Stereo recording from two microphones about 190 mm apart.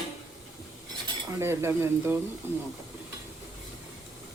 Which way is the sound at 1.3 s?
15° right (ahead or behind).